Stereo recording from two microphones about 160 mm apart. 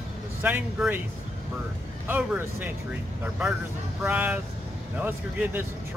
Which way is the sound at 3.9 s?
10° right (ahead or behind).